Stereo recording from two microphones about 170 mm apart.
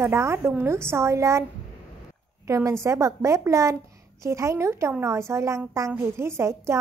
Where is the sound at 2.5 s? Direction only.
15° right (ahead or behind).